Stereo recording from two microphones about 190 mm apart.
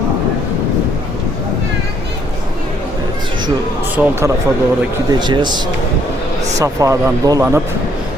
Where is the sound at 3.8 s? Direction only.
10° right (ahead or behind).